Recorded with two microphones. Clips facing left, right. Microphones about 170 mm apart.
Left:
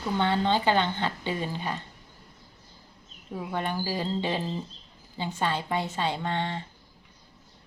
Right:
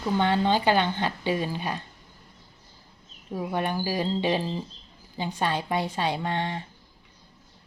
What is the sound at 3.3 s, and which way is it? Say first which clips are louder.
Speech: right 3 dB; 15° right (ahead or behind).